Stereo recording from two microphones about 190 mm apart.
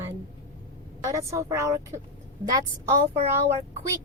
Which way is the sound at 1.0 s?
15° right (ahead or behind).